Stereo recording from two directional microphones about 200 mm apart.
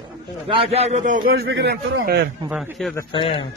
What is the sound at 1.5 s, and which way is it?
Speech, 65° right (ahead or behind).